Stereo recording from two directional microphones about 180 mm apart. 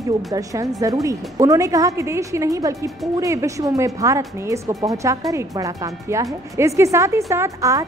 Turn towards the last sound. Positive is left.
turn(degrees=-15)  # may be behind; listen again after turning